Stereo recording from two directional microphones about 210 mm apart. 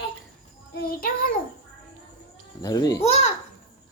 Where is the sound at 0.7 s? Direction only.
45° left (ahead or behind).